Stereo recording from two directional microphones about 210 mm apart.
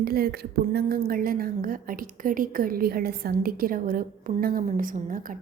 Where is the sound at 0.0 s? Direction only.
45° right (ahead or behind).